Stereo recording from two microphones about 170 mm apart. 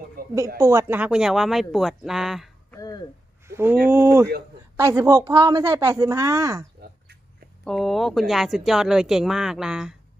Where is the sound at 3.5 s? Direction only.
15° right (ahead or behind).